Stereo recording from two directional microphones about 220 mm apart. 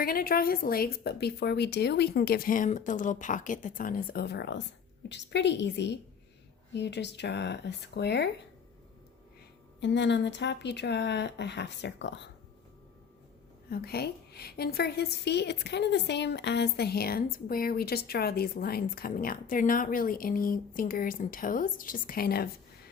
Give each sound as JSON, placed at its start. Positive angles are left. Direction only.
{"t": 0.0, "sound": "a woman's voice", "side_deg": 40}
{"t": 9.8, "sound": "a woman's voice", "side_deg": 55}
{"t": 13.7, "sound": "a woman's voice", "side_deg": 45}